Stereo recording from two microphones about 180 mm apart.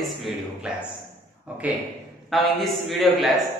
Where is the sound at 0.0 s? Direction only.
Centre (ahead or behind).